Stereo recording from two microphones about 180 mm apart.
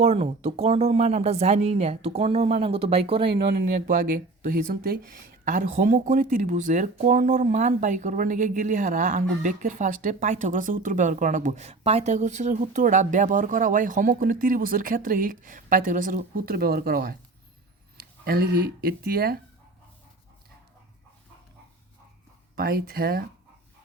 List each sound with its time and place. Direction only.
0.0 s speech: 35° right (ahead or behind)
3.8 s speech: 50° right (ahead or behind)
18.3 s speech: 55° right (ahead or behind)
22.5 s speech: 55° right (ahead or behind)